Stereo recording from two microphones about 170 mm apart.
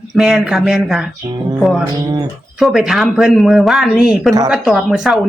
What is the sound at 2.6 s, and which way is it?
Speech, centre (ahead or behind).